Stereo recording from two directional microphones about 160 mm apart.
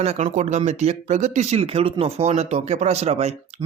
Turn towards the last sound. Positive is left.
turn(degrees=-40)  # may be behind; listen again after turning